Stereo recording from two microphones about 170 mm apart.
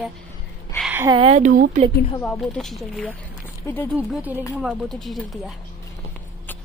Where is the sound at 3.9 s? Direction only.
10° right (ahead or behind).